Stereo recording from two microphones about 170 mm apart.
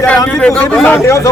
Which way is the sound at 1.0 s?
15° left (ahead or behind).